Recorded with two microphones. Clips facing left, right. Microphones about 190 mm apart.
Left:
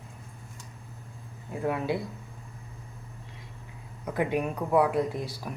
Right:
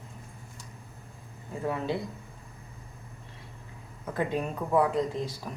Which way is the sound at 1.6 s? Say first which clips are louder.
Left 2 dB; 10° left (ahead or behind).